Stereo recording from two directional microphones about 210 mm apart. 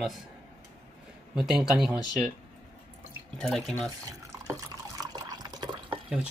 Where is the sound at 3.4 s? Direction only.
Centre (ahead or behind).